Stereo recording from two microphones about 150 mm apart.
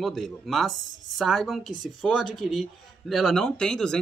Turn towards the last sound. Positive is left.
turn(degrees=5)  # may be behind; listen again after turning